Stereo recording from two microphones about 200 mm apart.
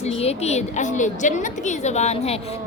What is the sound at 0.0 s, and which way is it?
A woman's voice, 30° left (ahead or behind).